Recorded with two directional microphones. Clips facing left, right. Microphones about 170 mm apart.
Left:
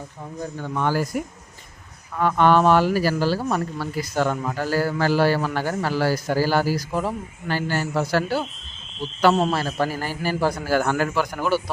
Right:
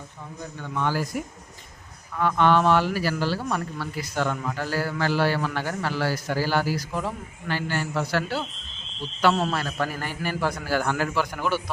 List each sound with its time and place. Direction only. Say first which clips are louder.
0.6 s speech: left 3 dB; 40° left (ahead or behind)
2.1 s speech: left 3 dB; 45° left (ahead or behind)
9.3 s speech: left 4 dB; 25° left (ahead or behind)